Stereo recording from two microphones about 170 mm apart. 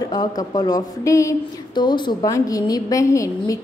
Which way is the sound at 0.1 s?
25° left (ahead or behind).